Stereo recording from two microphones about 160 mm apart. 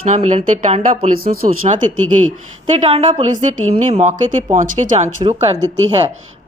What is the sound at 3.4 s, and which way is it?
A woman's voice, 50° right (ahead or behind).